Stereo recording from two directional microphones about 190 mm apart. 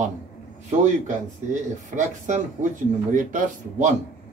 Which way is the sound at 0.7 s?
40° right (ahead or behind).